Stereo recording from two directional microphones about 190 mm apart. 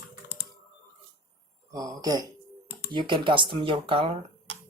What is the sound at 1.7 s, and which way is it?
Speech, 20° right (ahead or behind).